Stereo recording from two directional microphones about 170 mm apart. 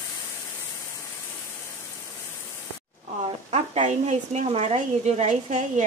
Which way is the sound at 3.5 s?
45° right (ahead or behind).